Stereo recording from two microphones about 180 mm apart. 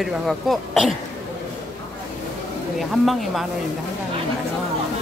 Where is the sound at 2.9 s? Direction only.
Centre (ahead or behind).